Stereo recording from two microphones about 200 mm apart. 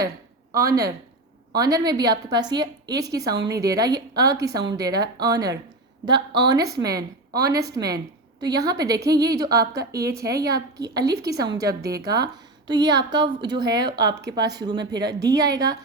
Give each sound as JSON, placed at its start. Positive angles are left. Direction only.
{"t": 0.5, "sound": "a woman's voice", "side_deg": -15}